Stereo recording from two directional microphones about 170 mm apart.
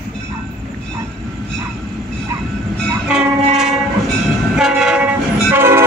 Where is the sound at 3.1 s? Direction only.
5° right (ahead or behind).